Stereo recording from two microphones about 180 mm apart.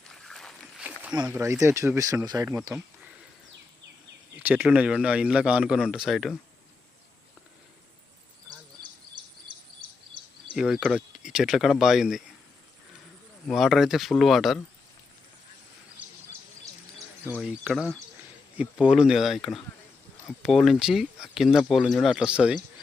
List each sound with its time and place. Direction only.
0.1 s a sound: centre (ahead or behind)
1.3 s a man's voice: 15° right (ahead or behind)
2.7 s a sound: 5° right (ahead or behind)
4.4 s a man's voice: 10° right (ahead or behind)
10.5 s speech: 5° right (ahead or behind)
13.5 s speech: centre (ahead or behind)
17.2 s speech: 5° right (ahead or behind)